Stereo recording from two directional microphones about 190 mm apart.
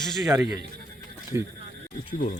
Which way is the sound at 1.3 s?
10° right (ahead or behind).